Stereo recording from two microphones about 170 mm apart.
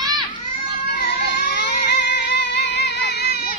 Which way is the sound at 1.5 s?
55° left (ahead or behind).